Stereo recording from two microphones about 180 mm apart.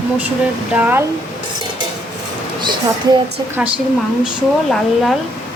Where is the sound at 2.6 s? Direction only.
25° right (ahead or behind).